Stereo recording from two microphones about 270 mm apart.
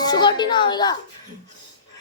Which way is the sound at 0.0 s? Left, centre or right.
Centre.